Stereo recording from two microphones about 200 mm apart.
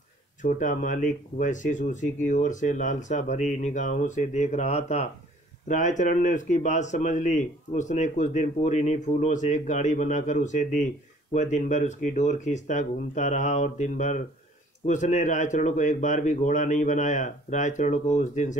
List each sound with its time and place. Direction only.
0.4 s speech: 40° left (ahead or behind)